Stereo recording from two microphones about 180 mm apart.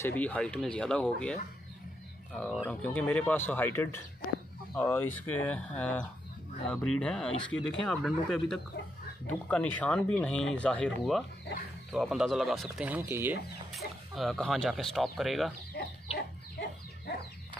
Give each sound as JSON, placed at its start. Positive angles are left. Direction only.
{"t": 0.0, "sound": "speech", "side_deg": 10}
{"t": 2.3, "sound": "speech", "side_deg": 5}
{"t": 13.7, "sound": "speech", "side_deg": 0}
{"t": 16.2, "sound": "dog", "side_deg": 65}